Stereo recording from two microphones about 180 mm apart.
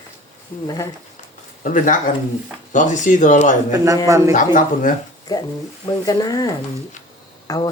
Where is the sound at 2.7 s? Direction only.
45° left (ahead or behind).